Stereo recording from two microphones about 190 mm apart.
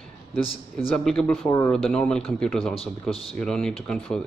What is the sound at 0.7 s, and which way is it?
Speech, 5° left (ahead or behind).